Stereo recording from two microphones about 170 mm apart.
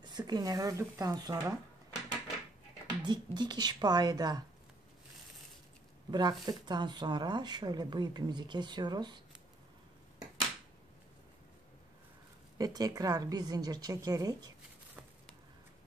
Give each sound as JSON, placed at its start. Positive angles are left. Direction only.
{"t": 0.0, "sound": "speech", "side_deg": -25}
{"t": 3.1, "sound": "speech", "side_deg": -25}
{"t": 6.0, "sound": "speech", "side_deg": -25}
{"t": 12.5, "sound": "speech", "side_deg": -20}